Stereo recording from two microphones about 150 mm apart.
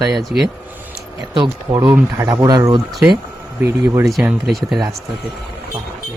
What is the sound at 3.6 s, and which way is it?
Speech, 20° right (ahead or behind).